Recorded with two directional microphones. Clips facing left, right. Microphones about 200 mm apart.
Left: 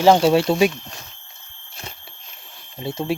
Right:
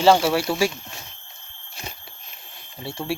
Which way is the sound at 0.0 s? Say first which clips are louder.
Left 3 dB; 20° left (ahead or behind).